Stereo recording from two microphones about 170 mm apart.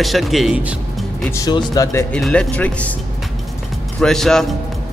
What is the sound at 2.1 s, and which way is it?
Speech, 5° left (ahead or behind).